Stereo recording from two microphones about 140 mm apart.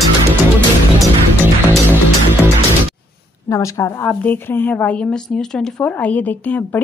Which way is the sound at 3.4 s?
25° left (ahead or behind).